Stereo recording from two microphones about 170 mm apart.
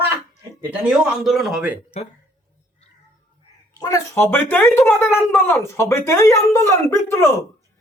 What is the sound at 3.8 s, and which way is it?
Speech, 20° left (ahead or behind).